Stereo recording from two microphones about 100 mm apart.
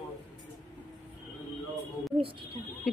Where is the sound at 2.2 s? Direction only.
60° right (ahead or behind).